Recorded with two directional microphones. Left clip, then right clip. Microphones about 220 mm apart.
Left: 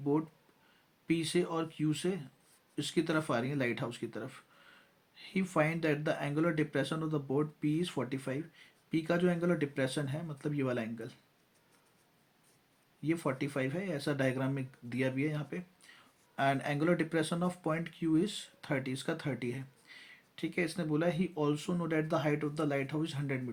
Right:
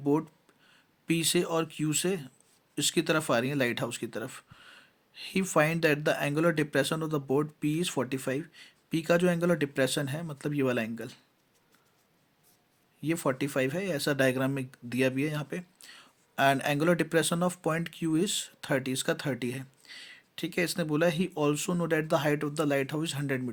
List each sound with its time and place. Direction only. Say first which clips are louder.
0.0 s a sound: right 5 dB; 40° right (ahead or behind)
1.0 s speech: right 4 dB; 40° right (ahead or behind)
13.0 s speech: right 5 dB; 40° right (ahead or behind)